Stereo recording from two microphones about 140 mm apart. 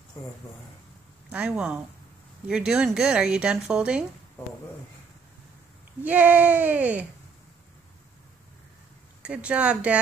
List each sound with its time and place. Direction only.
0.2 s speech: 20° left (ahead or behind)
1.3 s speech: 5° right (ahead or behind)
6.0 s speech: 10° right (ahead or behind)
9.2 s speech: 10° right (ahead or behind)